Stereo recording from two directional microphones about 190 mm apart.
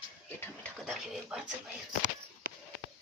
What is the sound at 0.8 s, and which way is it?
Speech, centre (ahead or behind).